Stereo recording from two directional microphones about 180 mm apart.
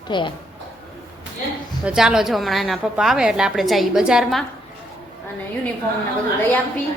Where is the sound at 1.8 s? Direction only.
5° right (ahead or behind).